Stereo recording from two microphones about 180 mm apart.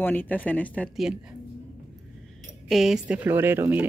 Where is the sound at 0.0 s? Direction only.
10° left (ahead or behind).